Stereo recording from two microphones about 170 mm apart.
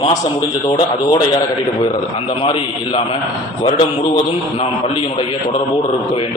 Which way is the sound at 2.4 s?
30° left (ahead or behind).